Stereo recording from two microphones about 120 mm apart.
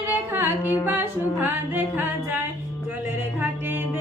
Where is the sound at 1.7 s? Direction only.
15° right (ahead or behind).